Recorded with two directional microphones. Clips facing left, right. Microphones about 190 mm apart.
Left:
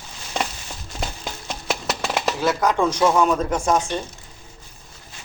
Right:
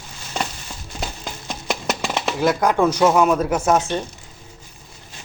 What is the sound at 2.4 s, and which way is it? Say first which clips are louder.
Speech: right 4 dB; 10° right (ahead or behind).